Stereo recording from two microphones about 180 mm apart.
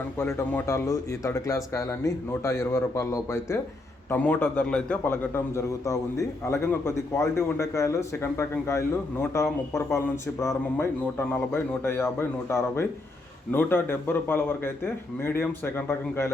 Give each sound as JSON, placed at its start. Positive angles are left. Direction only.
{"t": 0.2, "sound": "a man's voice", "side_deg": 15}